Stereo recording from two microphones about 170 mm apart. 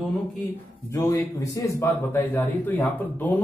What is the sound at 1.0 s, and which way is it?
A man's voice, 20° left (ahead or behind).